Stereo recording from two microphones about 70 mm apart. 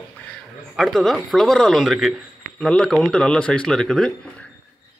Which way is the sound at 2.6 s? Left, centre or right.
Centre.